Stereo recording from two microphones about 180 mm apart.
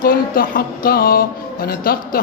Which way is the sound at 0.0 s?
50° left (ahead or behind).